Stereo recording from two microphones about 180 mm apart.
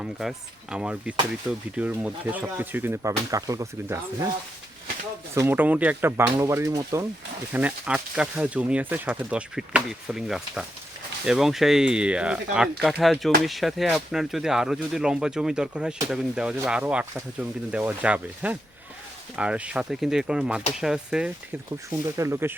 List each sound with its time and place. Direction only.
0.0 s speech: 5° right (ahead or behind)
5.3 s speech: 15° right (ahead or behind)
7.5 s speech: 5° right (ahead or behind)